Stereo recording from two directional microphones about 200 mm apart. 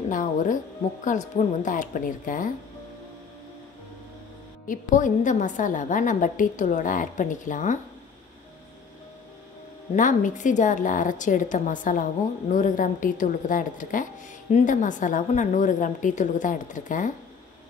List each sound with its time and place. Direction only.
0.1 s a woman's voice: 40° left (ahead or behind)
4.6 s a woman's voice: 40° left (ahead or behind)
9.9 s a woman's voice: 40° left (ahead or behind)